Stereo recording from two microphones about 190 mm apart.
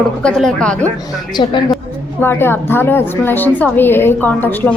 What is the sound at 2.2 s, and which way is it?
A woman's voice, 10° left (ahead or behind).